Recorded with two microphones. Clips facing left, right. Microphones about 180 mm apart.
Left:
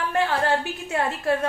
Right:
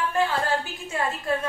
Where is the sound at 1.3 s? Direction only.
70° left (ahead or behind).